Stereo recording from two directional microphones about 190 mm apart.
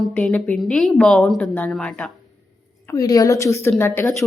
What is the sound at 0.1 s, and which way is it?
A woman's voice, 5° left (ahead or behind).